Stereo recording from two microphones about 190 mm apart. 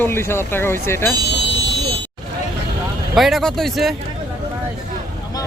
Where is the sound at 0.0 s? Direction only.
15° left (ahead or behind).